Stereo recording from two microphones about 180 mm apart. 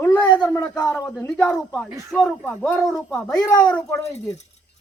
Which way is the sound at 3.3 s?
20° left (ahead or behind).